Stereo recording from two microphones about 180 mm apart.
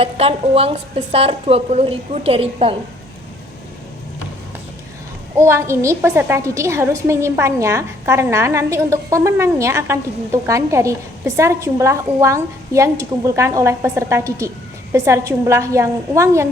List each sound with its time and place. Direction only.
0.0 s a woman's voice: 35° right (ahead or behind)
5.4 s a woman's voice: 15° right (ahead or behind)